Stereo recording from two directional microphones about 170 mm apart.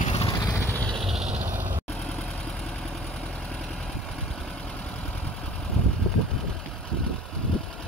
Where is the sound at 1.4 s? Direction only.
10° right (ahead or behind).